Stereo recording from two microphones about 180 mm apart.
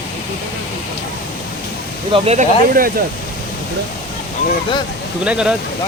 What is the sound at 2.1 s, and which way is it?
Speech, 35° right (ahead or behind).